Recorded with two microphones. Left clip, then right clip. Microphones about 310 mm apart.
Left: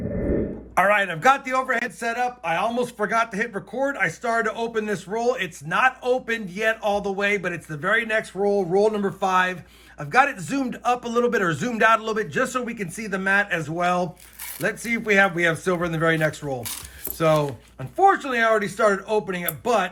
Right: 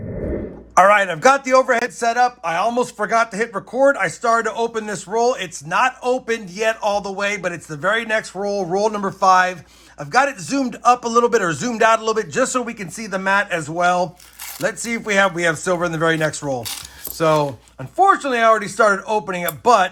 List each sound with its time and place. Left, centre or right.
0.7 s a man's voice: centre